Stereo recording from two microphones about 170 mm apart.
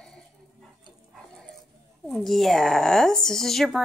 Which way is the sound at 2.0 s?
Centre (ahead or behind).